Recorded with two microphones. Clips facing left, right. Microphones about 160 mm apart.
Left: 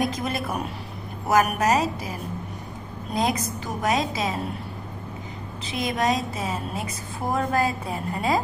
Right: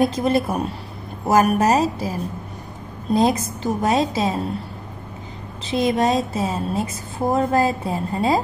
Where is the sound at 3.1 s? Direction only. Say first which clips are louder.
Right 7 dB; 30° right (ahead or behind).